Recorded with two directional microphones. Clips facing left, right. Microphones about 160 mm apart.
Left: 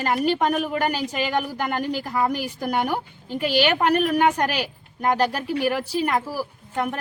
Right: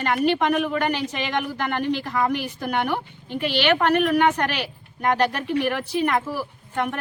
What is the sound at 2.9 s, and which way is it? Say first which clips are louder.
Speech: even; 40° left (ahead or behind).